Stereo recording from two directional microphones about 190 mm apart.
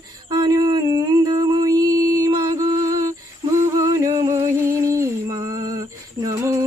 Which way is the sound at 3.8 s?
15° right (ahead or behind).